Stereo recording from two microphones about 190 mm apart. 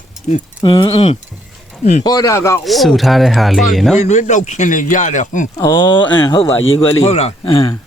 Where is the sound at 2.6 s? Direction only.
Centre (ahead or behind).